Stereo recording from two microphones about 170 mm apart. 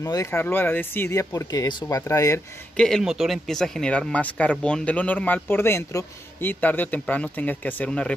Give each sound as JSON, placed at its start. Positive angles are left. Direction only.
{"t": 0.0, "sound": "speech", "side_deg": 20}
{"t": 2.8, "sound": "speech", "side_deg": 0}